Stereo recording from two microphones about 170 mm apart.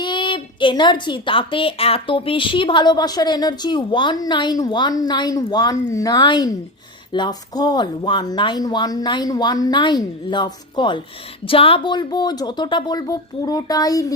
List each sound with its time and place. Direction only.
0.0 s a woman's voice: 30° left (ahead or behind)